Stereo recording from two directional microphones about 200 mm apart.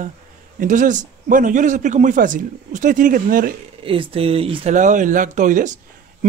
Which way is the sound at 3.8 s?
25° right (ahead or behind).